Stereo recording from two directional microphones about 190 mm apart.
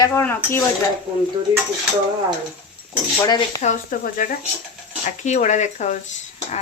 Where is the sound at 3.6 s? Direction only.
45° left (ahead or behind).